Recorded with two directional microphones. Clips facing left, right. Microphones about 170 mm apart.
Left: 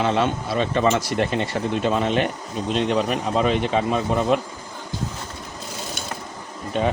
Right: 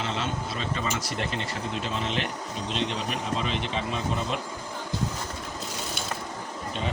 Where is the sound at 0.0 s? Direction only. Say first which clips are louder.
Left 9 dB; 60° left (ahead or behind).